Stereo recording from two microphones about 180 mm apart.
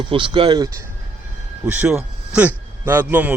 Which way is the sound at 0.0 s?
25° right (ahead or behind).